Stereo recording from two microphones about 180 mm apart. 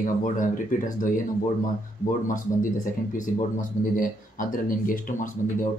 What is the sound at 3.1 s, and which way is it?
Speech, 45° left (ahead or behind).